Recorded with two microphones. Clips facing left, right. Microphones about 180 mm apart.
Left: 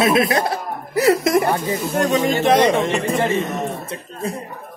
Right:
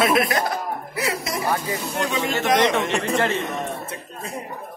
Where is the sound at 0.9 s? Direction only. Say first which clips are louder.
Left 13 dB; 45° left (ahead or behind).